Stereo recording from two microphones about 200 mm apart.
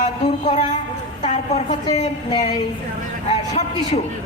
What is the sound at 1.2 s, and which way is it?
A woman's voice, 30° left (ahead or behind).